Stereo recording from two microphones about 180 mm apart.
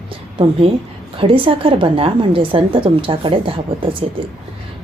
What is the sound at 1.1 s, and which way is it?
A woman's voice, 30° right (ahead or behind).